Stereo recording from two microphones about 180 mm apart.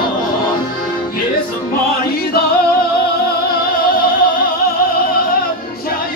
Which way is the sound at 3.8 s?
55° left (ahead or behind).